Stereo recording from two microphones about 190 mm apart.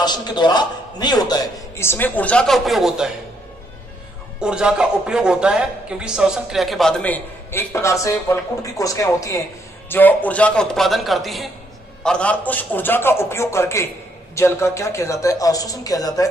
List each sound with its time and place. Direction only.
0.0 s a man's voice: 20° left (ahead or behind); by 3.1 s centre (ahead or behind)
4.4 s a man's voice: 5° right (ahead or behind); by 16.3 s 20° left (ahead or behind)